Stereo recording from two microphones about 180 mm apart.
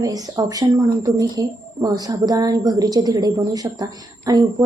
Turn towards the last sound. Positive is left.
turn(degrees=-20)  # may be behind; listen again after turning